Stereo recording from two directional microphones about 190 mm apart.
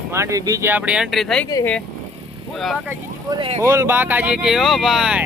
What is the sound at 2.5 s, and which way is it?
Speech, centre (ahead or behind).